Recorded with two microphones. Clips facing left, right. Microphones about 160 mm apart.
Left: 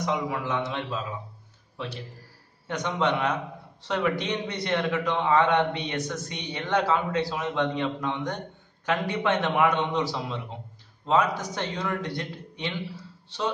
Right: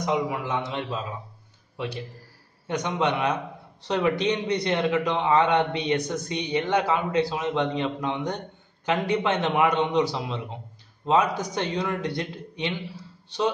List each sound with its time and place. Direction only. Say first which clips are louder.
0.0 s a man's voice: right 2 dB; 15° right (ahead or behind)
2.7 s a man's voice: right 1 dB; 15° right (ahead or behind)